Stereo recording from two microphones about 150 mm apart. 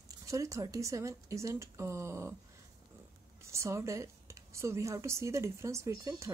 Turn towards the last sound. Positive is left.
turn(degrees=-20)  # may be behind; listen again after turning